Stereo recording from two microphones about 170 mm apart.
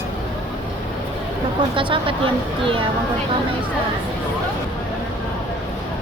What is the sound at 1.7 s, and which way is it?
Speech, 30° right (ahead or behind).